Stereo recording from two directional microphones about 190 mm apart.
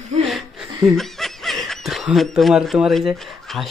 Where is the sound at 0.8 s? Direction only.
Centre (ahead or behind).